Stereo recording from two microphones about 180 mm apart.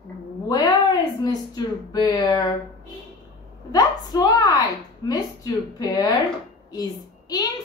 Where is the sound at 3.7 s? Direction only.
20° left (ahead or behind).